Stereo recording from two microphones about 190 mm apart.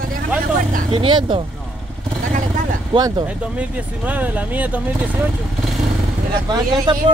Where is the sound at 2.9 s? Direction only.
20° right (ahead or behind).